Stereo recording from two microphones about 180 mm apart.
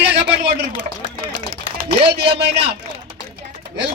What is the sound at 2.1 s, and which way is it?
Speech, 65° right (ahead or behind).